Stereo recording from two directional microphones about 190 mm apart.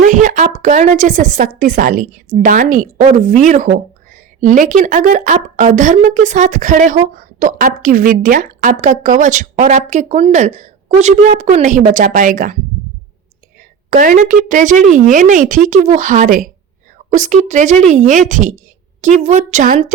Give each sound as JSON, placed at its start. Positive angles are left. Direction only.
{"t": 0.0, "sound": "a woman's voice", "side_deg": -40}
{"t": 13.6, "sound": "a woman's voice", "side_deg": -45}